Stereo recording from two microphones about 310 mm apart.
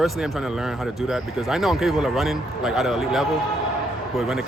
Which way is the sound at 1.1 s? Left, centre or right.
Centre.